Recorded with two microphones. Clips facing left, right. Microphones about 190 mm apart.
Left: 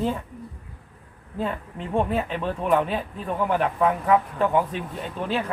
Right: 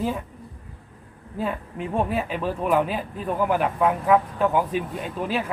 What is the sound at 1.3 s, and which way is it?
Speech, 5° right (ahead or behind).